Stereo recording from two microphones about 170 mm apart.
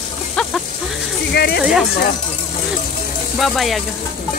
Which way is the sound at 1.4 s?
70° left (ahead or behind).